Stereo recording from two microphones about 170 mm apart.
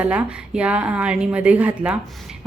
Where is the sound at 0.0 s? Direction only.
10° right (ahead or behind).